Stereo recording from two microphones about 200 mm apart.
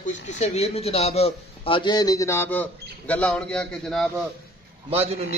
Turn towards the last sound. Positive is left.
turn(degrees=-30)  # may be behind; listen again after turning